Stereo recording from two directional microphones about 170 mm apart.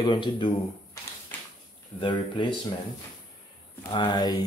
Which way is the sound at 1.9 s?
30° left (ahead or behind).